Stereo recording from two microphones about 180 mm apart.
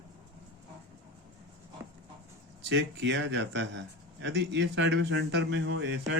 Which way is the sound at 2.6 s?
80° right.